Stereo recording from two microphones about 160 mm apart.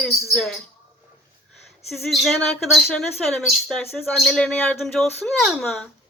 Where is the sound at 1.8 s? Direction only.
Centre (ahead or behind).